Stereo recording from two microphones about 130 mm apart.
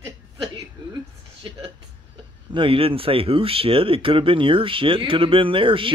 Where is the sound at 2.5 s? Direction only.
45° right (ahead or behind).